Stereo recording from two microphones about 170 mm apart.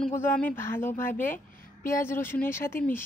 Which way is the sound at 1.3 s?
55° left (ahead or behind).